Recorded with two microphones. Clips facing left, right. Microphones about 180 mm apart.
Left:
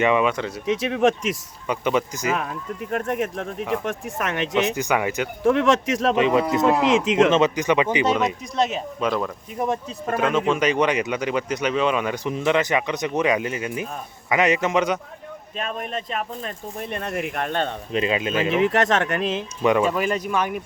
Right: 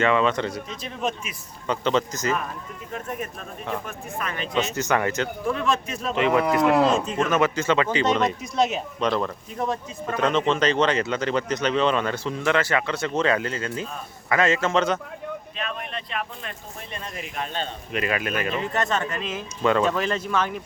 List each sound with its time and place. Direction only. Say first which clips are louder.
0.0 s speech: left 1 dB; 15° left (ahead or behind)
0.7 s speech: left 10 dB; 75° left (ahead or behind)
1.6 s speech: left 1 dB; 10° left (ahead or behind)
2.9 s speech: left 7 dB; 75° left (ahead or behind)
4.6 s speech: left 2 dB; 15° left (ahead or behind)
5.5 s speech: left 9 dB; 85° left
6.1 s speech: even; 20° left (ahead or behind)
6.8 s speech: left 4 dB; 90° left
7.3 s speech: left 3 dB; 20° left (ahead or behind)
16.9 s speech: left 7 dB; 60° left (ahead or behind)
17.9 s speech: left 3 dB; 25° left (ahead or behind)
18.5 s speech: left 9 dB; 85° left
19.3 s speech: even; 20° left (ahead or behind)